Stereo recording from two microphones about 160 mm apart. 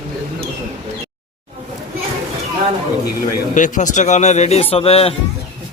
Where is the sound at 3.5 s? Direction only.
50° left (ahead or behind).